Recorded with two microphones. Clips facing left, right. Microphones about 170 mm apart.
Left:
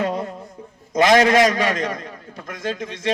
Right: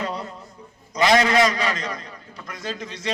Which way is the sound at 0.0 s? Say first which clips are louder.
Left 6 dB; 50° left (ahead or behind).